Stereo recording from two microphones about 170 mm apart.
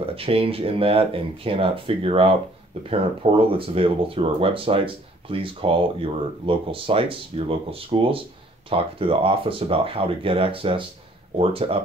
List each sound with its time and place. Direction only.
0.0 s speech: 35° right (ahead or behind)